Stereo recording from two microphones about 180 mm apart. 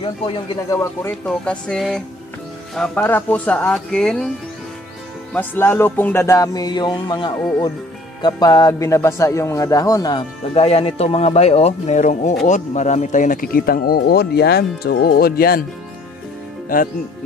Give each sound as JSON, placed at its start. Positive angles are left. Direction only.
{"t": 0.0, "sound": "a man's voice", "side_deg": 30}
{"t": 1.2, "sound": "speech", "side_deg": 5}
{"t": 2.7, "sound": "music", "side_deg": 5}
{"t": 5.3, "sound": "music", "side_deg": 10}
{"t": 8.2, "sound": "a man's voice", "side_deg": 20}
{"t": 10.5, "sound": "speech", "side_deg": 35}
{"t": 16.6, "sound": "speech", "side_deg": 50}